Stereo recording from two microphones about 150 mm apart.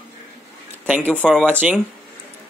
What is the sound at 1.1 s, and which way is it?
Speech, 5° left (ahead or behind).